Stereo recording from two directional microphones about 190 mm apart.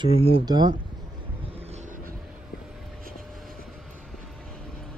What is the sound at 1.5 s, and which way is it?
Boat, 35° right (ahead or behind).